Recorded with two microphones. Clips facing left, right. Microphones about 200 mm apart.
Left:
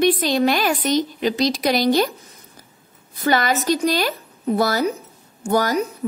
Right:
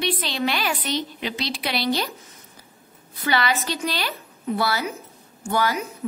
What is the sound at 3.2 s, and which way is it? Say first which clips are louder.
A woman's voice: left 4 dB; 45° left (ahead or behind).